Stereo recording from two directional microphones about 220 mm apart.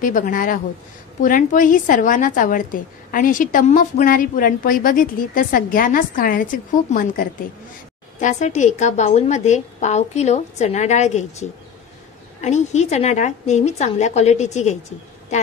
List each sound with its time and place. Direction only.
0.0 s a woman's voice: 40° left (ahead or behind)